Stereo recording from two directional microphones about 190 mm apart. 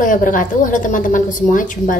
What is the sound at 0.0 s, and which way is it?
A woman's voice, 45° left (ahead or behind).